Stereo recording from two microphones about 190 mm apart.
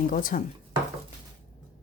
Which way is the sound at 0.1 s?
45° left (ahead or behind).